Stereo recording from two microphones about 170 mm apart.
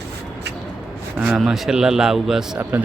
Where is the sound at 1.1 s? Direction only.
5° right (ahead or behind).